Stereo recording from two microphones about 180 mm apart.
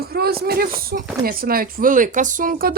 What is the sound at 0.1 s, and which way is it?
Speech, 60° right (ahead or behind).